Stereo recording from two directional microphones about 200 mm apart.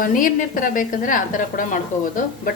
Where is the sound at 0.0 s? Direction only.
45° left (ahead or behind).